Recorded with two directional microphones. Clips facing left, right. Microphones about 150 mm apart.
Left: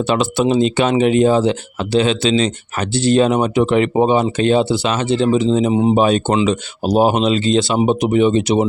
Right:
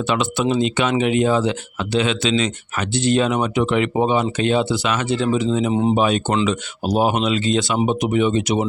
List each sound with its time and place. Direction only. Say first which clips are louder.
0.0 s speech: left 4 dB; 35° left (ahead or behind)